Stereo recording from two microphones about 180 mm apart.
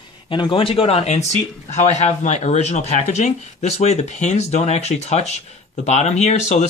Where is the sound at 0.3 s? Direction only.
30° left (ahead or behind).